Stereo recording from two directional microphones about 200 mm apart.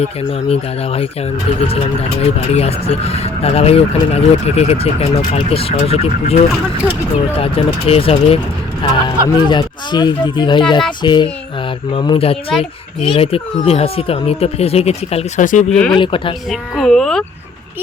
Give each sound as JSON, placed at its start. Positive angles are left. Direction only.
{"t": 0.0, "sound": "speech", "side_deg": 30}
{"t": 7.3, "sound": "speech", "side_deg": 30}
{"t": 15.7, "sound": "speech", "side_deg": 5}
{"t": 16.0, "sound": "speech", "side_deg": 25}
{"t": 16.5, "sound": "speech", "side_deg": 0}